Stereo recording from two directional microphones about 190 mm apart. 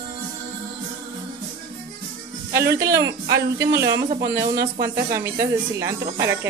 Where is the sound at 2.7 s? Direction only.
15° right (ahead or behind).